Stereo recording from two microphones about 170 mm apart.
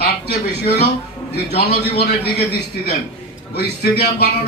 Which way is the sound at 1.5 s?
65° left (ahead or behind).